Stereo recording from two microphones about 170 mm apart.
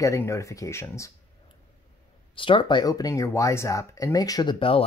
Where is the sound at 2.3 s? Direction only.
30° left (ahead or behind).